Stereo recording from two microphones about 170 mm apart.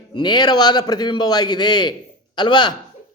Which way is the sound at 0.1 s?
25° left (ahead or behind).